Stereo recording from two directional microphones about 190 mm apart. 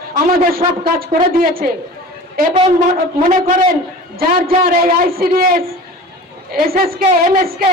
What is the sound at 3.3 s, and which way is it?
A man's voice, 50° right (ahead or behind).